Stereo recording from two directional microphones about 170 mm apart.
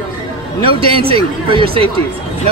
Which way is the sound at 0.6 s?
30° right (ahead or behind).